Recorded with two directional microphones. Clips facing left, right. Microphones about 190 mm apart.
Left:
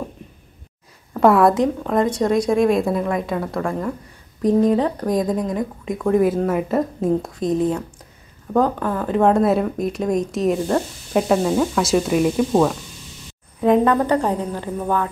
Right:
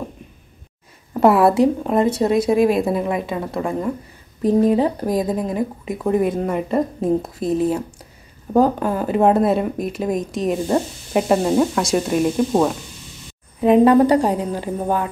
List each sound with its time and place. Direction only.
1.1 s a woman's voice: 5° right (ahead or behind)
8.7 s speech: 20° right (ahead or behind)
9.0 s a woman's voice: 10° right (ahead or behind)